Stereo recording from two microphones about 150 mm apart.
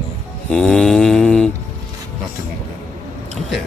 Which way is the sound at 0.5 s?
5° left (ahead or behind).